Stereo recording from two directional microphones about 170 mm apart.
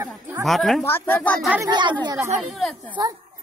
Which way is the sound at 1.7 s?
25° right (ahead or behind).